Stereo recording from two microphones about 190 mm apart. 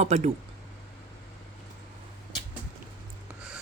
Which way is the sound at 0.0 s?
35° right (ahead or behind).